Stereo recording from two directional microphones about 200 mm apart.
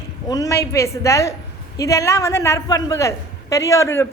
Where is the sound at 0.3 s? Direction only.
15° left (ahead or behind).